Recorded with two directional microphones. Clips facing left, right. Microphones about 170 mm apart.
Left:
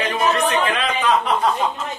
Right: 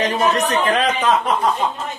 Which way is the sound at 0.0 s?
40° right (ahead or behind).